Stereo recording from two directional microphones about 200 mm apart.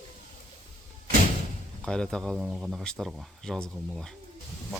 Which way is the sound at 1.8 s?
5° left (ahead or behind).